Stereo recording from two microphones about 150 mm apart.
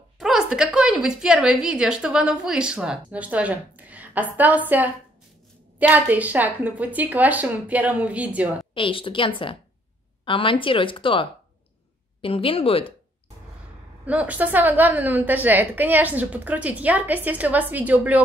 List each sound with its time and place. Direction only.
0.2 s a woman's voice: 5° right (ahead or behind)
8.7 s speech: 35° left (ahead or behind)
14.0 s a woman's voice: 10° right (ahead or behind)